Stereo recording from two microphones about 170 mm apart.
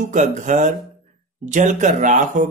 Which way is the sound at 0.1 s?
45° right (ahead or behind).